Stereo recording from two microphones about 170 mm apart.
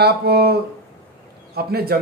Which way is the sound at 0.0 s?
70° right (ahead or behind).